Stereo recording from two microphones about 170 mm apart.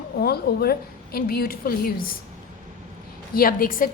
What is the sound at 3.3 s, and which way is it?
Speech, 60° left (ahead or behind).